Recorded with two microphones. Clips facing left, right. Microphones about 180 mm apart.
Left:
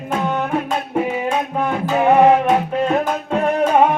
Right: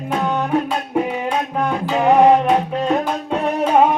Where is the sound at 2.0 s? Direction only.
5° left (ahead or behind).